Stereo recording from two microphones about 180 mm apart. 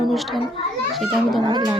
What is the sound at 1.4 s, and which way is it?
Speech, 25° right (ahead or behind).